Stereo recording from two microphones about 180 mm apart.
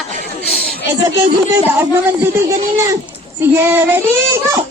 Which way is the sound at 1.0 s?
20° right (ahead or behind).